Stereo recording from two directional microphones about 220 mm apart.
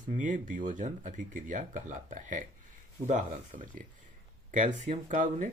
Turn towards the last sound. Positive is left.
turn(degrees=-35)  # may be behind; listen again after turning